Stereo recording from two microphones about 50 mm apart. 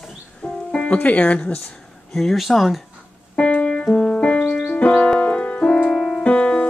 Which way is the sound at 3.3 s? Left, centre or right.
Left.